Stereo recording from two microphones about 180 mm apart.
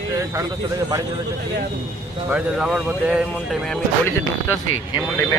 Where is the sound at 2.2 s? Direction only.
5° right (ahead or behind).